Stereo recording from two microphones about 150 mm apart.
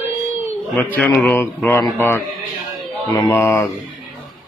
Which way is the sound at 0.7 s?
10° left (ahead or behind).